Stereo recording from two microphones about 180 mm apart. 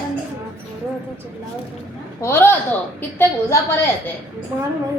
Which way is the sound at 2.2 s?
15° left (ahead or behind).